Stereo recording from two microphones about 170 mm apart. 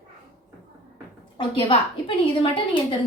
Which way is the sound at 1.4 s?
35° left (ahead or behind).